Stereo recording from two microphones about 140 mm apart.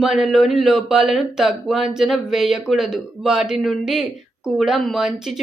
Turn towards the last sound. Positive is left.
turn(degrees=0)  # may be behind; listen again after turning